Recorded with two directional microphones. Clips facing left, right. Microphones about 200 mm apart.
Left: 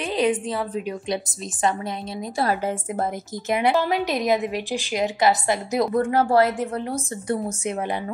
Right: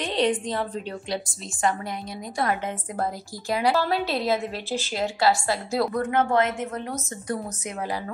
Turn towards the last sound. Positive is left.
turn(degrees=25)  # may be behind; listen again after turning